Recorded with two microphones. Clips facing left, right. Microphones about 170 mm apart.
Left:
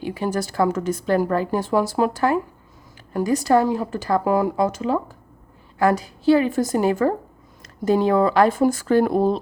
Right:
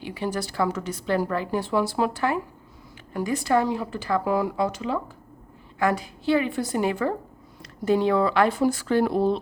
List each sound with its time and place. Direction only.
0.0 s a woman's voice: 45° left (ahead or behind)